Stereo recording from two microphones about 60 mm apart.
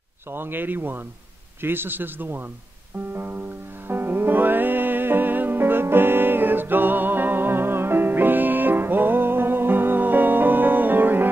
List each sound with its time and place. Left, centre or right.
0.3 s a man's voice: right
3.1 s music: right